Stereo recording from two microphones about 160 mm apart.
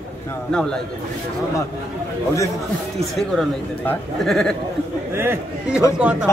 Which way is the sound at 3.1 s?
Centre (ahead or behind).